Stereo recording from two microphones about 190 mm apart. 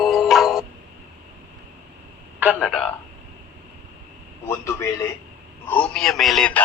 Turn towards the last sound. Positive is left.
turn(degrees=5)  # may be behind; listen again after turning